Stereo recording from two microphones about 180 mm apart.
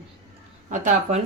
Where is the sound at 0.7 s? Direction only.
45° right (ahead or behind).